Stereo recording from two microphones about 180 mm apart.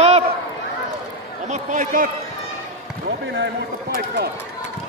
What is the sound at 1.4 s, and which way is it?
Speech, 40° right (ahead or behind).